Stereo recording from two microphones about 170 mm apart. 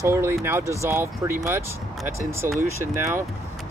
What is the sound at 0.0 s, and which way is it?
Speech, 15° right (ahead or behind).